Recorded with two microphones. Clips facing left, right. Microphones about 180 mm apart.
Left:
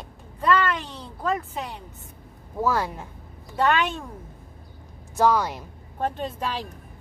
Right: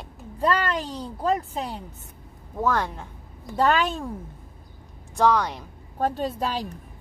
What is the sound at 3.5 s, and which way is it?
Speech, 35° right (ahead or behind).